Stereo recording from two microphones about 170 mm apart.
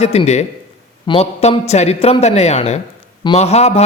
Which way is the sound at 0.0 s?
40° left (ahead or behind).